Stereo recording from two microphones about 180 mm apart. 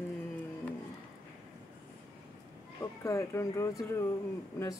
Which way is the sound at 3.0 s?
15° left (ahead or behind).